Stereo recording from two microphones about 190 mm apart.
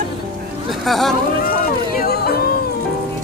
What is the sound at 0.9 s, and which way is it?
Speech, centre (ahead or behind).